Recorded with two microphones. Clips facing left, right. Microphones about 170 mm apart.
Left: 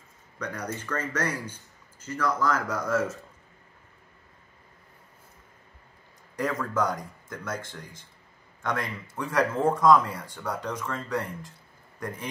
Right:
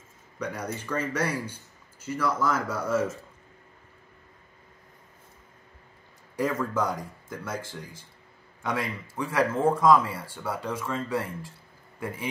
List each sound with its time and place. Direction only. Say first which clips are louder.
0.4 s speech: right 1 dB; 10° right (ahead or behind)
6.3 s speech: right 1 dB; 5° right (ahead or behind)
9.1 s speech: even; 5° right (ahead or behind)